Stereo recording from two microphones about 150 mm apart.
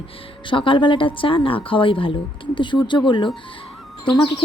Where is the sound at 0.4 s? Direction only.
35° left (ahead or behind).